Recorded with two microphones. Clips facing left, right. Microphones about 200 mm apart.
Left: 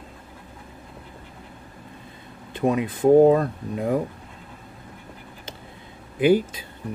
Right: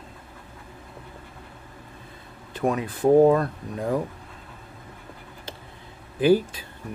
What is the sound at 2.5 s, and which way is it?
Speech, 20° left (ahead or behind).